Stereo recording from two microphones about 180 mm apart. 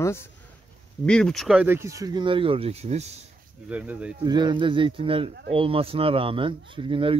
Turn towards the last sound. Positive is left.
turn(degrees=-30)  # may be behind; listen again after turning